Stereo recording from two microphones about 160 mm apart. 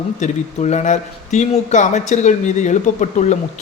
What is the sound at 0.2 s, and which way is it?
A man's voice, 45° left (ahead or behind).